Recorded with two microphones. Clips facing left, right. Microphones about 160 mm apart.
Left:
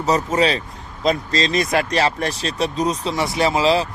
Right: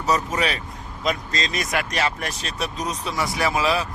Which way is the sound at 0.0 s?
30° left (ahead or behind).